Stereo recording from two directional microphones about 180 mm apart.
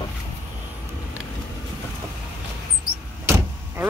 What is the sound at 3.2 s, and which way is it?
Vehicle, 15° right (ahead or behind).